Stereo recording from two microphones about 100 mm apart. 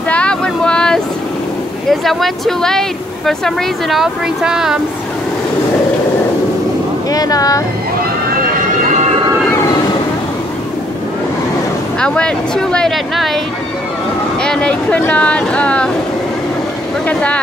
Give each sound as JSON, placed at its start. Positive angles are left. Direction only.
{"t": 0.1, "sound": "vehicle", "side_deg": 10}
{"t": 1.9, "sound": "speech", "side_deg": 0}
{"t": 7.1, "sound": "speech", "side_deg": 40}
{"t": 12.0, "sound": "speech", "side_deg": 10}
{"t": 14.4, "sound": "speech", "side_deg": 10}
{"t": 17.0, "sound": "speech", "side_deg": 10}